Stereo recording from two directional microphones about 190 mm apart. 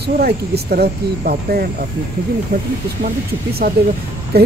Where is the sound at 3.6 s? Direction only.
50° right (ahead or behind).